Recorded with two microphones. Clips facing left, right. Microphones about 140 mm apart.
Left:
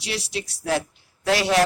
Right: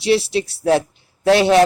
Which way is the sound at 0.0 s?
30° right (ahead or behind).